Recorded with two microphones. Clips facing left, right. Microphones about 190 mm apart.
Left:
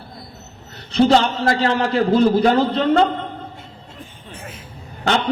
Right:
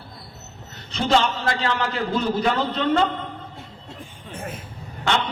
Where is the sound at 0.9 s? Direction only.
35° left (ahead or behind).